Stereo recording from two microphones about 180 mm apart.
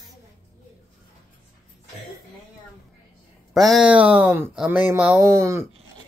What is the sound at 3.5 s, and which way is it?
Speech, centre (ahead or behind).